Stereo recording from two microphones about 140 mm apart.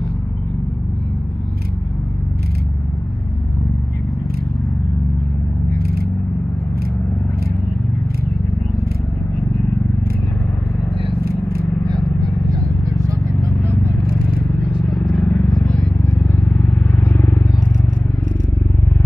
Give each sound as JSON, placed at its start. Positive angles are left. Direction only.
{"t": 5.7, "sound": "a sound", "side_deg": -90}
{"t": 11.9, "sound": "vehicle", "side_deg": -30}
{"t": 14.7, "sound": "vehicle", "side_deg": -5}
{"t": 15.1, "sound": "vehicle", "side_deg": 10}